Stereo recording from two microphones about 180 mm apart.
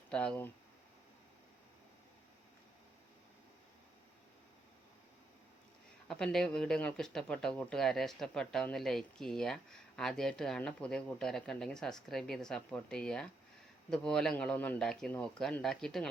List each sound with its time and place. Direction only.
0.1 s speech: 5° left (ahead or behind)
6.1 s speech: 5° left (ahead or behind)